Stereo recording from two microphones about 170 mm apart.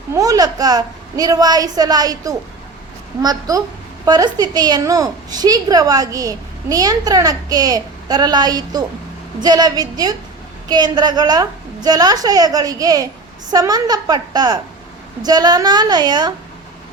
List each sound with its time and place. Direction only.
0.1 s a woman's voice: 20° right (ahead or behind)